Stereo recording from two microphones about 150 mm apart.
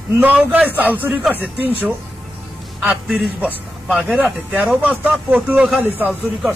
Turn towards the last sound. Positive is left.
turn(degrees=-10)  # may be behind; listen again after turning